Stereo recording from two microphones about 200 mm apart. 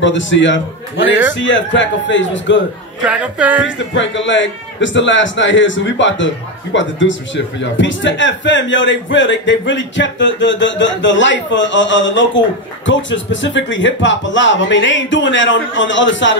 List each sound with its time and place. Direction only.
0.0 s a man's voice: 65° left (ahead or behind)
3.0 s speech: 5° right (ahead or behind)
3.6 s a man's voice: 65° left (ahead or behind)